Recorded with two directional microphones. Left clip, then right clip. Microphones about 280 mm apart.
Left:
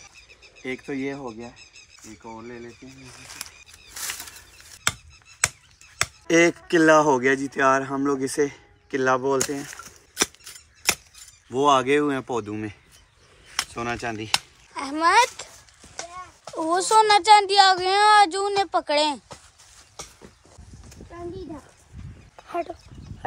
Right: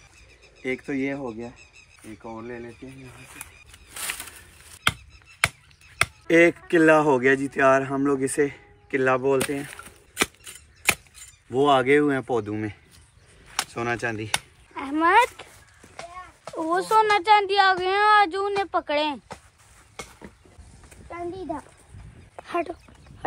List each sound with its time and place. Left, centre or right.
0.6 s speech: centre
6.2 s speech: centre
11.5 s speech: centre
13.7 s a child's voice: centre
16.5 s speech: centre
22.5 s a sound: right